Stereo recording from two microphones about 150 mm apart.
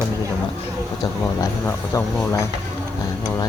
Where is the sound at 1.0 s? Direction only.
20° left (ahead or behind).